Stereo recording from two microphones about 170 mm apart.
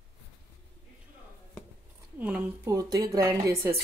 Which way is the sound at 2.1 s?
10° right (ahead or behind).